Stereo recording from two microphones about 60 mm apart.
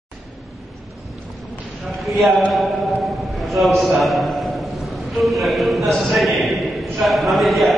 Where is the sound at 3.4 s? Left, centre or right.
Centre.